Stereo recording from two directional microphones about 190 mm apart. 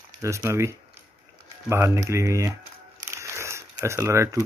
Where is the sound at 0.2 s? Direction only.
15° right (ahead or behind).